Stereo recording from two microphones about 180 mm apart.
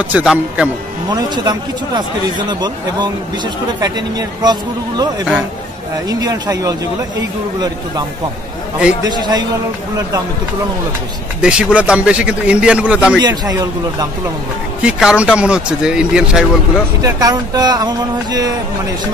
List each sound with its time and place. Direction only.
0.1 s speech: 5° right (ahead or behind)
1.1 s speech: 25° right (ahead or behind)
9.0 s speech: 20° right (ahead or behind)
11.4 s speech: 5° right (ahead or behind)
13.2 s speech: 20° right (ahead or behind)
14.8 s speech: 5° right (ahead or behind)
17.0 s speech: 20° right (ahead or behind)